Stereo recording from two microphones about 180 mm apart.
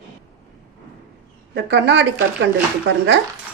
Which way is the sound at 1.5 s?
80° right.